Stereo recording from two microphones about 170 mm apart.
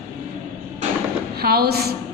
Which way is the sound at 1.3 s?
65° right (ahead or behind).